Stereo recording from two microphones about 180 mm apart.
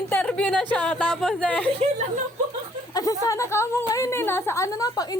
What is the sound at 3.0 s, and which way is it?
A woman's voice, 20° left (ahead or behind).